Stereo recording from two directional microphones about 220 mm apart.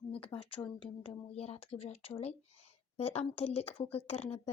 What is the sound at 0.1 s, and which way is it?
Speech, 25° left (ahead or behind).